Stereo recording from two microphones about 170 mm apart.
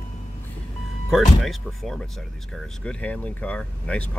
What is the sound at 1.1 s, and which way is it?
Speech, centre (ahead or behind).